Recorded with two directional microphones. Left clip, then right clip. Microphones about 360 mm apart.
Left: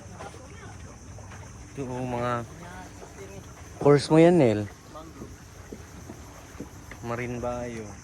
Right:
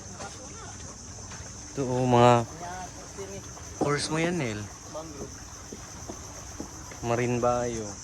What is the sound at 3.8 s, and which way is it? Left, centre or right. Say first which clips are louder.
Speech: left 10 dB; centre.